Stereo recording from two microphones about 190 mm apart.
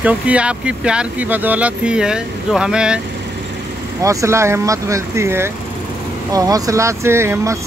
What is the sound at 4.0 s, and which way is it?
Speech, 15° right (ahead or behind).